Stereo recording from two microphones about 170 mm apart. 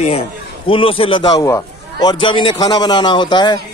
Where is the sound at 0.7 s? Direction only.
30° left (ahead or behind).